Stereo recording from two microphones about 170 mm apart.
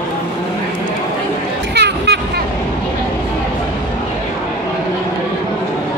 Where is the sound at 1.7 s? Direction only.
80° right.